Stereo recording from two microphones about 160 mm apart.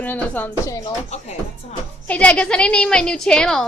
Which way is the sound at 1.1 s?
45° left (ahead or behind).